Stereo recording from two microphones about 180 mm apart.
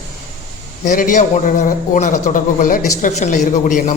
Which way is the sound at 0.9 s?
45° left (ahead or behind).